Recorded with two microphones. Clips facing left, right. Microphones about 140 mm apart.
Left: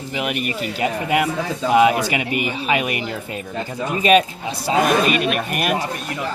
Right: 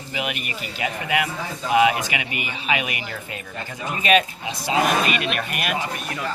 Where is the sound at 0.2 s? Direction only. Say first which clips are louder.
Left 5 dB; 45° left (ahead or behind).